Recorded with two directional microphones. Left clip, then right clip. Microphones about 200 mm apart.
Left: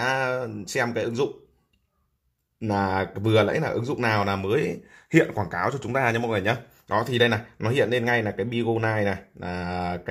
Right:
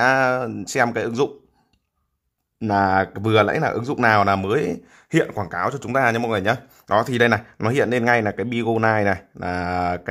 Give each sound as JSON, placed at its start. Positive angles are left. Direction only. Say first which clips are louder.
{"t": 0.0, "sound": "speech", "louder": "right 7 dB", "side_deg": -30}
{"t": 2.6, "sound": "speech", "louder": "right 7 dB", "side_deg": -30}